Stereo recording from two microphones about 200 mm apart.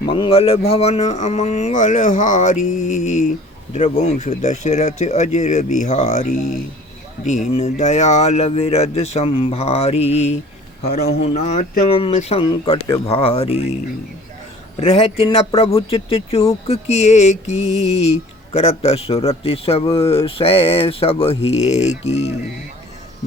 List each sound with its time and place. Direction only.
0.0 s speech: 25° left (ahead or behind)
14.8 s a man's voice: 30° left (ahead or behind)
18.5 s a man's voice: 30° left (ahead or behind)